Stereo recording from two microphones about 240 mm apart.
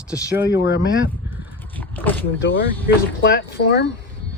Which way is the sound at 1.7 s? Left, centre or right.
Centre.